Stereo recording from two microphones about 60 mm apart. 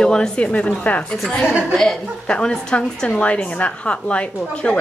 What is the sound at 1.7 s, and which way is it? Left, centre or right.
A woman's voice, centre.